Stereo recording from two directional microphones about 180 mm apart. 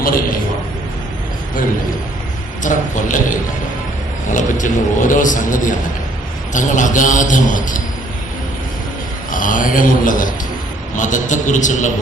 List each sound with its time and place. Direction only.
0.0 s a man's voice: 50° left (ahead or behind)
2.6 s a man's voice: 45° left (ahead or behind)
9.3 s a man's voice: 50° left (ahead or behind)